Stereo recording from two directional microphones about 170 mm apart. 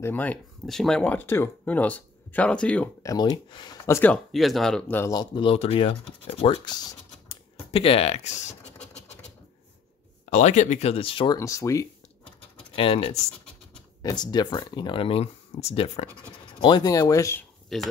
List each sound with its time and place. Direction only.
0.0 s speech: 10° left (ahead or behind)
3.0 s speech: 20° left (ahead or behind)
3.8 s speech: 15° left (ahead or behind)
5.1 s speech: 25° left (ahead or behind)
10.3 s speech: 45° left (ahead or behind)
11.3 s speech: 20° left (ahead or behind)
12.7 s speech: 35° left (ahead or behind)
14.0 s speech: 25° left (ahead or behind)
17.7 s speech: centre (ahead or behind)